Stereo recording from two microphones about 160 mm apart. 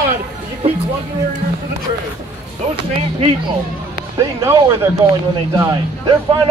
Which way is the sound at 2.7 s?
30° right (ahead or behind).